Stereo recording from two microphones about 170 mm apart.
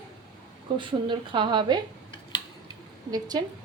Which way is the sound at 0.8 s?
30° right (ahead or behind).